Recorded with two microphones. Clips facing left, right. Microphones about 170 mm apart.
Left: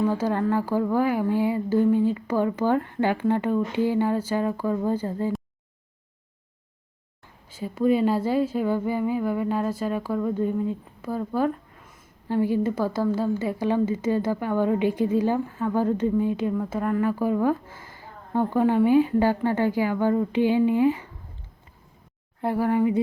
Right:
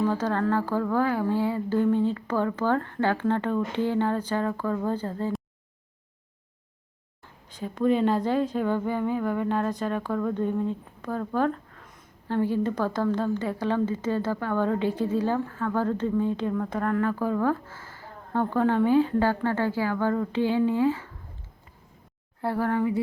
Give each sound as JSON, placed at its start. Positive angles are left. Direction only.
{"t": 0.1, "sound": "a woman's voice", "side_deg": 10}
{"t": 7.5, "sound": "a woman's voice", "side_deg": 5}
{"t": 22.4, "sound": "a woman's voice", "side_deg": 15}